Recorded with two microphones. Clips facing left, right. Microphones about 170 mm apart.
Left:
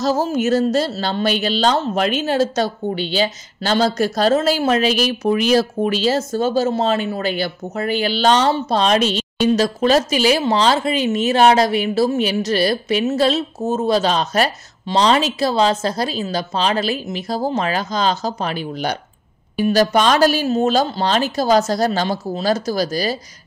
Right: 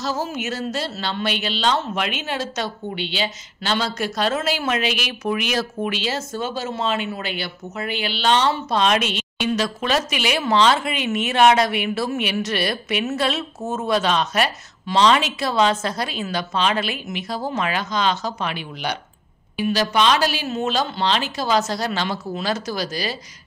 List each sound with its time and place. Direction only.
0.0 s speech: 40° left (ahead or behind)